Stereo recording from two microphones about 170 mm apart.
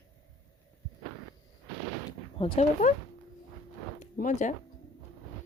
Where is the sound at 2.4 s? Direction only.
30° left (ahead or behind).